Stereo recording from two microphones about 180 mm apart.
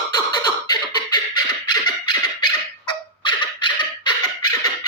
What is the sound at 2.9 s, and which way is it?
Beatboxing, 25° left (ahead or behind).